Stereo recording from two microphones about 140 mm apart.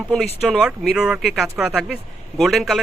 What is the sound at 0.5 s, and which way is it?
Speech, centre (ahead or behind).